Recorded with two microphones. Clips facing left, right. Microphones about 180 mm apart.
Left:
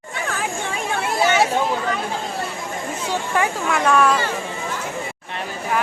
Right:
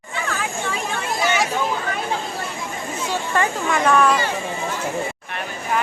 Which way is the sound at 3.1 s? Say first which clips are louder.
Even; 10° left (ahead or behind).